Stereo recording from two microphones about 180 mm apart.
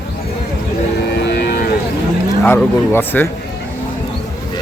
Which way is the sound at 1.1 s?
70° left (ahead or behind).